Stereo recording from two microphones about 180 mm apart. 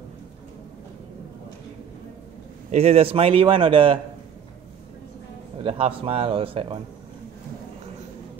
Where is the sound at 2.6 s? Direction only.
35° right (ahead or behind).